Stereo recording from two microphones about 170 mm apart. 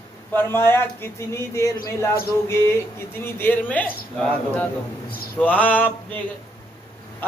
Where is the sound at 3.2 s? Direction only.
10° left (ahead or behind).